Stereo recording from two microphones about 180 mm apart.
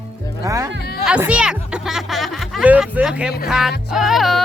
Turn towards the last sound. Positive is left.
turn(degrees=0)  # may be behind; listen again after turning